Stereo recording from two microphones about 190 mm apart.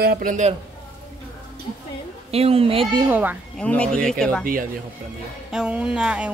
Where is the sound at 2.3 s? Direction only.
30° right (ahead or behind).